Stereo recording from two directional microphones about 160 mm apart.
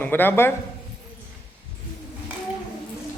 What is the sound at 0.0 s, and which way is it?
Speech, 10° left (ahead or behind).